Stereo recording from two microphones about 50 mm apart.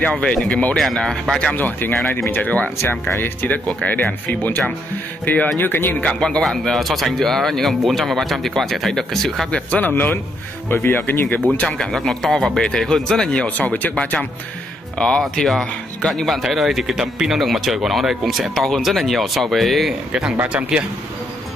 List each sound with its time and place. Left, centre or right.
0.0 s speech: left
0.7 s speech: centre
1.5 s speech: left
5.6 s speech: left
6.0 s speech: centre
9.5 s speech: left
10.7 s speech: left
11.8 s speech: centre
13.6 s speech: left
15.0 s speech: centre
16.1 s speech: centre
20.1 s speech: centre